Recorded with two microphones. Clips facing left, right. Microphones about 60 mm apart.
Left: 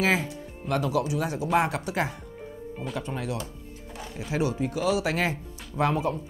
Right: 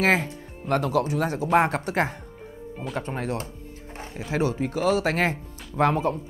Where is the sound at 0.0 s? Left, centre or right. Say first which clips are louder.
Right 3 dB; right.